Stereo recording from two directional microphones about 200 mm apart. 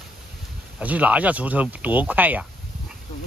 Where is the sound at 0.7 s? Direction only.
5° right (ahead or behind).